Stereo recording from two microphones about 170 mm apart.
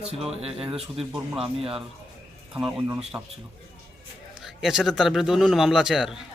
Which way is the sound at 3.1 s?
15° right (ahead or behind).